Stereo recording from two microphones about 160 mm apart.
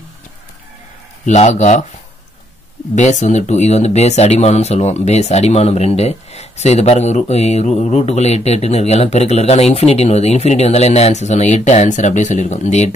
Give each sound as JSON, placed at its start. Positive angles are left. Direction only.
{"t": 1.2, "sound": "speech", "side_deg": 45}
{"t": 3.0, "sound": "speech", "side_deg": 50}